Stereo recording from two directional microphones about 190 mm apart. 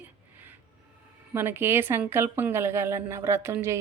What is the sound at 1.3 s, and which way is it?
A woman's voice, 10° right (ahead or behind).